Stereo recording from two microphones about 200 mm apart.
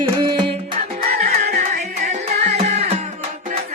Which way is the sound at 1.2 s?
50° right (ahead or behind).